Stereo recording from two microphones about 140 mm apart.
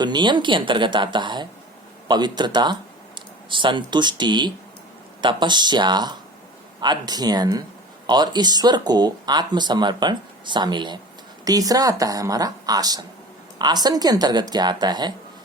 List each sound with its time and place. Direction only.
0.0 s a woman's voice: 30° right (ahead or behind)